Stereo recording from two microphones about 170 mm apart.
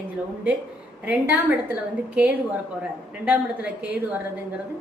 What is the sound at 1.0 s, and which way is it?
A woman's voice, 10° right (ahead or behind).